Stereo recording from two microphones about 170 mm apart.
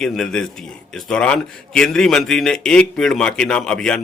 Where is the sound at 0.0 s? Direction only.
5° left (ahead or behind).